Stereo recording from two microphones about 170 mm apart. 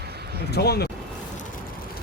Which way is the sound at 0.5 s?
70° left (ahead or behind).